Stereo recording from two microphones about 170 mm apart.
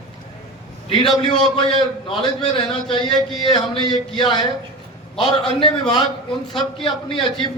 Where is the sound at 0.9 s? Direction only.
30° left (ahead or behind).